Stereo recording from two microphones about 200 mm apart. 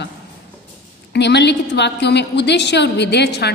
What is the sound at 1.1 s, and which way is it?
A woman's voice, 60° left (ahead or behind).